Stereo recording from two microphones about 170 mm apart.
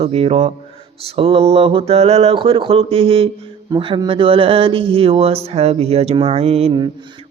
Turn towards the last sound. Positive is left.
turn(degrees=-40)  # may be behind; listen again after turning